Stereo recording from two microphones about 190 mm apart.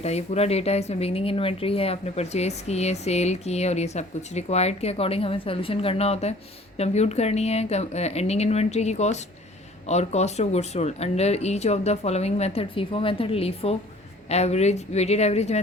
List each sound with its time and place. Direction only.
0.0 s speech: 35° left (ahead or behind)